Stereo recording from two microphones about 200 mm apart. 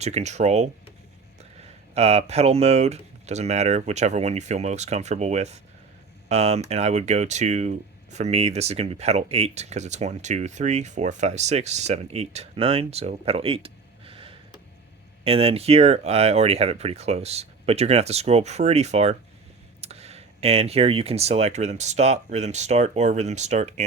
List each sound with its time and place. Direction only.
0.0 s speech: 35° right (ahead or behind)
2.0 s speech: 30° right (ahead or behind)